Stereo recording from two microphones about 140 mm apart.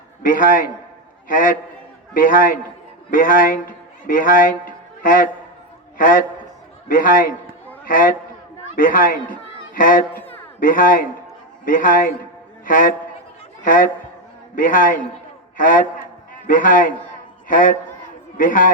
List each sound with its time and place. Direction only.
0.2 s a man's voice: 70° left (ahead or behind)